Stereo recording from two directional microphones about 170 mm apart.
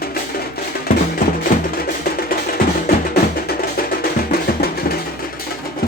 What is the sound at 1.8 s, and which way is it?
Music, 60° left (ahead or behind).